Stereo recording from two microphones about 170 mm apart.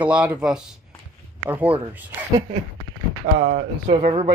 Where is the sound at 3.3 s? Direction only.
50° right (ahead or behind).